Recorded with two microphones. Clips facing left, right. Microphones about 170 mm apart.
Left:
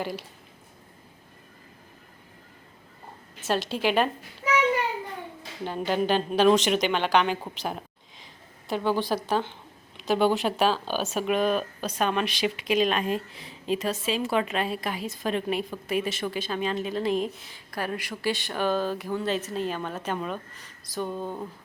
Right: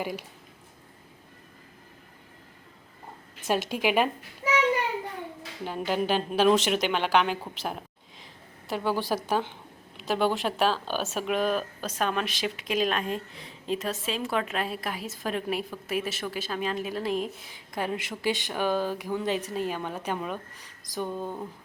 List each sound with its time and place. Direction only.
0.0 s speech: 10° right (ahead or behind)
3.4 s speech: 10° right (ahead or behind)
5.6 s speech: 5° right (ahead or behind)
7.5 s a sound: centre (ahead or behind)
10.0 s speech: centre (ahead or behind)
17.5 s speech: 20° right (ahead or behind)